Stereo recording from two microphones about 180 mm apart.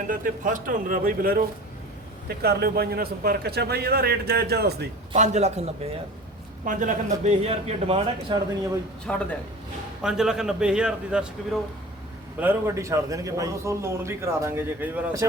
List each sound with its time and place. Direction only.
0.1 s a man's voice: 50° right (ahead or behind)
5.1 s a man's voice: 40° right (ahead or behind)
9.1 s a man's voice: 5° left (ahead or behind); by 15.3 s 15° right (ahead or behind)